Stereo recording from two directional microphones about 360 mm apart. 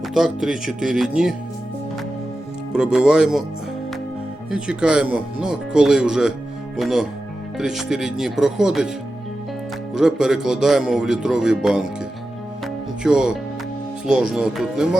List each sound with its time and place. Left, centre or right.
0.1 s speech: centre
2.7 s speech: centre
4.5 s speech: centre
9.9 s speech: centre
13.0 s speech: centre